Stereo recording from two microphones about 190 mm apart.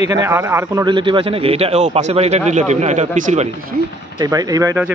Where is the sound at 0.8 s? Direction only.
25° right (ahead or behind).